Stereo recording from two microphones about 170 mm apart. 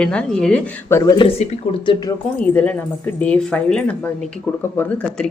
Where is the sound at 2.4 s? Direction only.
10° left (ahead or behind).